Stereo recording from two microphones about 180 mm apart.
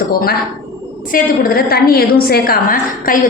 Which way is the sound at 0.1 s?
55° left (ahead or behind).